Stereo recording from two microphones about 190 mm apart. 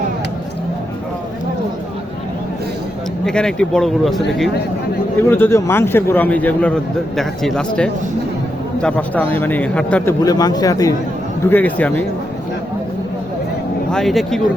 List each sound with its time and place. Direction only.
3.2 s speech: 5° left (ahead or behind)
5.3 s a man's voice: 15° left (ahead or behind)
10.2 s a man's voice: 20° left (ahead or behind)
13.9 s speech: centre (ahead or behind)